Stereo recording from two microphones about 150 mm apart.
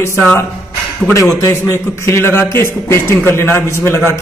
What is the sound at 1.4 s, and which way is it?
A man's voice, 20° left (ahead or behind).